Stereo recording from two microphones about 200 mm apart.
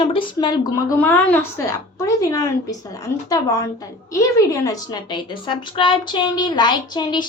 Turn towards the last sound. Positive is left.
turn(degrees=20)  # may be behind; listen again after turning